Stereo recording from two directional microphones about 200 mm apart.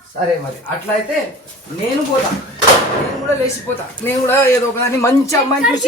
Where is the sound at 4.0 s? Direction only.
10° left (ahead or behind).